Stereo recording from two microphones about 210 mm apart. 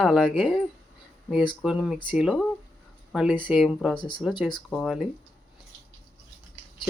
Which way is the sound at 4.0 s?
20° left (ahead or behind).